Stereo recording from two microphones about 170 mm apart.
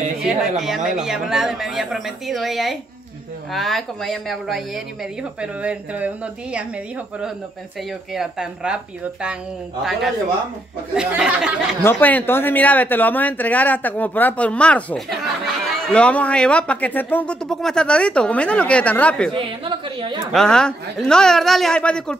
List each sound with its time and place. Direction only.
0.2 s speech: centre (ahead or behind)
8.1 s speech: 5° right (ahead or behind)
11.8 s speech: 10° left (ahead or behind)
19.3 s a woman's voice: 30° right (ahead or behind)
20.3 s speech: 5° left (ahead or behind)